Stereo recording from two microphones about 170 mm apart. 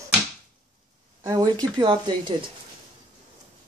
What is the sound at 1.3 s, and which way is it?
Speech, 20° right (ahead or behind).